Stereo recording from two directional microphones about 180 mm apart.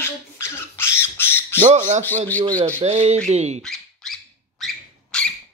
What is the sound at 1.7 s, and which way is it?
Speech, 40° right (ahead or behind).